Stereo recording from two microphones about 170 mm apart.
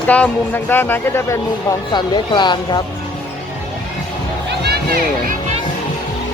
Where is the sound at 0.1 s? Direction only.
10° left (ahead or behind).